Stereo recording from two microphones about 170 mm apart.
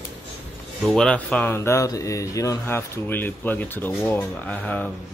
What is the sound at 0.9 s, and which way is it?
Speech, 5° left (ahead or behind).